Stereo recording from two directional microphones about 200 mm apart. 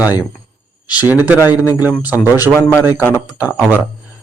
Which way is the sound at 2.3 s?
15° left (ahead or behind).